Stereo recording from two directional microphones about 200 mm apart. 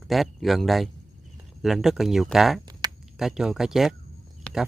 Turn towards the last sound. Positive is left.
turn(degrees=0)  # may be behind; listen again after turning